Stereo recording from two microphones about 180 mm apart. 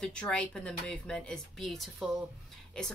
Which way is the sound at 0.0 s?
5° left (ahead or behind).